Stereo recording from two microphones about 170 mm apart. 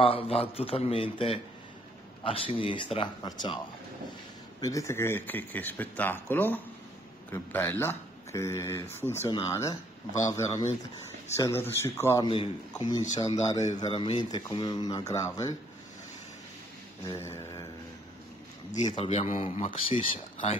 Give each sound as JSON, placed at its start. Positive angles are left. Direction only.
{"t": 0.0, "sound": "a man's voice", "side_deg": 35}
{"t": 4.6, "sound": "speech", "side_deg": 20}
{"t": 12.3, "sound": "speech", "side_deg": 30}
{"t": 17.0, "sound": "a sound", "side_deg": 15}
{"t": 18.9, "sound": "a man's voice", "side_deg": 35}